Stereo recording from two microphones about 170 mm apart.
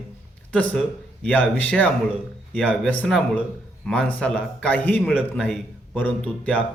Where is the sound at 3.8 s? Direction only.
5° left (ahead or behind).